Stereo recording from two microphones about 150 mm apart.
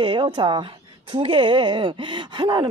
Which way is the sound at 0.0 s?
35° right (ahead or behind).